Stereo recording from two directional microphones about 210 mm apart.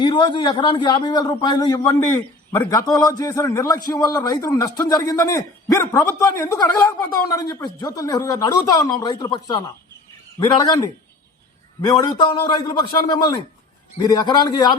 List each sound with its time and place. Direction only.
0.0 s a man's voice: 20° left (ahead or behind)
11.9 s a man's voice: 20° left (ahead or behind)